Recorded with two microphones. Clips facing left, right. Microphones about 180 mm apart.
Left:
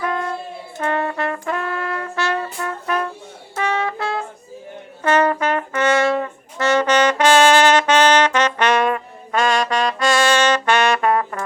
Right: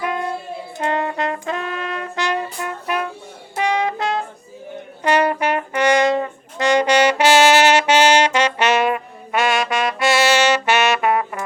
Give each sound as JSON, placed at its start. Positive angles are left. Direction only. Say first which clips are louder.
{"t": 0.0, "sound": "wind instrument", "louder": "even", "side_deg": -15}
{"t": 0.8, "sound": "brass instrument", "louder": "even", "side_deg": -20}